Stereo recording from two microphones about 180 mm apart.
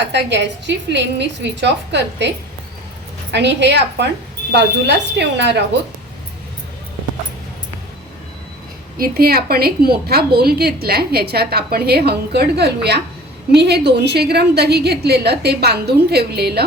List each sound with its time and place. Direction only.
0.1 s a woman's voice: 75° right (ahead or behind)
3.3 s a woman's voice: 75° right (ahead or behind)
9.0 s a woman's voice: 55° right (ahead or behind)